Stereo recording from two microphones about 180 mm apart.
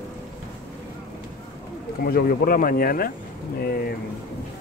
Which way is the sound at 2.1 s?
55° left (ahead or behind).